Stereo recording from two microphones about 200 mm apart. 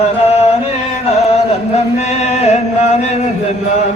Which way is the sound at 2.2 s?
35° left (ahead or behind).